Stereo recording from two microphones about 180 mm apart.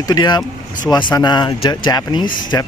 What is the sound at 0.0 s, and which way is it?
Speech, 20° left (ahead or behind).